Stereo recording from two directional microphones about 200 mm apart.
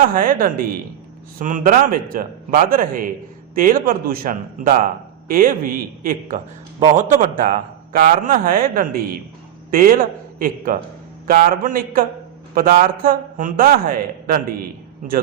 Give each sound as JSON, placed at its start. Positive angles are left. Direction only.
{"t": 0.0, "sound": "a man's voice", "side_deg": -45}